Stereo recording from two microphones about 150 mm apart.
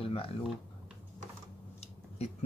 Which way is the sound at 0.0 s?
40° left (ahead or behind).